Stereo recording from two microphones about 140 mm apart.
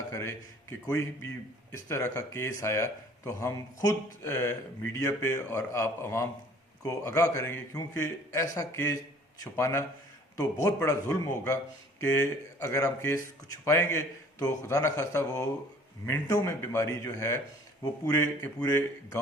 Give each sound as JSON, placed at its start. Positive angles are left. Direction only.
{"t": 0.1, "sound": "a man's voice", "side_deg": 20}
{"t": 12.0, "sound": "a man's voice", "side_deg": 10}